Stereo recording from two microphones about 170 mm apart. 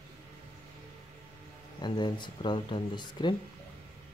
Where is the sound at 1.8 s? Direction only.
25° left (ahead or behind).